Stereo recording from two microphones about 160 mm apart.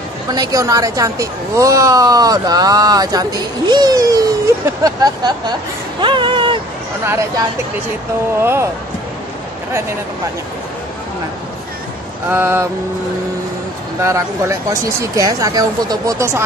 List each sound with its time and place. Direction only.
0.3 s speech: 25° right (ahead or behind)
5.9 s a sound: 30° right (ahead or behind)
7.1 s speech: 20° right (ahead or behind)
12.3 s speech: 15° right (ahead or behind)
14.0 s speech: 20° right (ahead or behind)